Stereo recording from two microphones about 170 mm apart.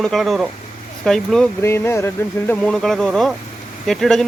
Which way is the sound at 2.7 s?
Centre (ahead or behind).